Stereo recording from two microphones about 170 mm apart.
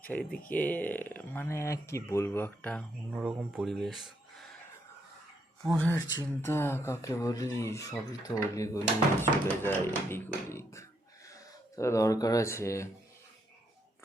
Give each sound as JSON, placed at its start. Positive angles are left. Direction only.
{"t": 0.0, "sound": "speech", "side_deg": 10}
{"t": 3.2, "sound": "speech", "side_deg": -5}
{"t": 5.6, "sound": "speech", "side_deg": 5}